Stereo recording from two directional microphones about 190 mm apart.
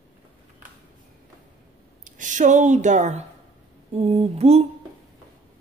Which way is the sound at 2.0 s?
40° right (ahead or behind).